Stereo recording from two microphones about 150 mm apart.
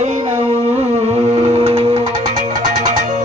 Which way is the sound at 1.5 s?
40° right (ahead or behind).